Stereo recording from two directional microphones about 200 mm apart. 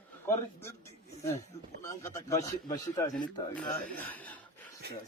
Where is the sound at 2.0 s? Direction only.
15° left (ahead or behind).